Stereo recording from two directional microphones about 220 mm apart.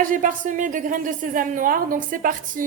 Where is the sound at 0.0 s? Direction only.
35° right (ahead or behind).